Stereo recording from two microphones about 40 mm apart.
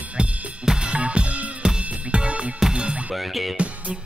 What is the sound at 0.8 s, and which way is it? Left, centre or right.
Drum kit, right.